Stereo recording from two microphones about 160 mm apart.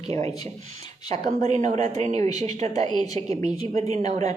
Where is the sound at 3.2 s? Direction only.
35° right (ahead or behind).